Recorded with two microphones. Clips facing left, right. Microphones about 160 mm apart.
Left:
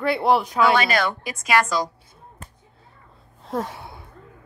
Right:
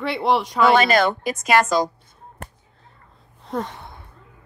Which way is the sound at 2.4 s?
65° right (ahead or behind).